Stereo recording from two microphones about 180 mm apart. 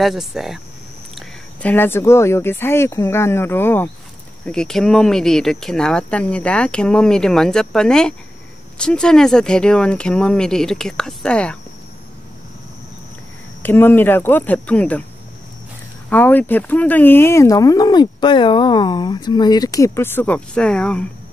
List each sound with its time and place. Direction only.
0.0 s speech: centre (ahead or behind)
1.1 s speech: 10° left (ahead or behind)
13.6 s speech: 10° left (ahead or behind)
16.1 s speech: 10° left (ahead or behind)